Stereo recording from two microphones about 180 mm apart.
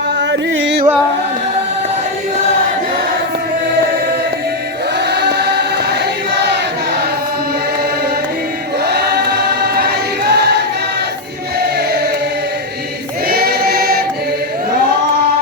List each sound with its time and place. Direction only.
0.2 s music: 85° right
4.9 s choir: 65° right (ahead or behind)
8.8 s choir: 65° right (ahead or behind)
11.6 s choir: 60° right (ahead or behind)
13.2 s choir: 60° right (ahead or behind)